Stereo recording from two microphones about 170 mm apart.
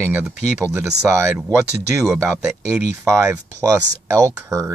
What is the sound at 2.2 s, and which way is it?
Speech, 15° right (ahead or behind).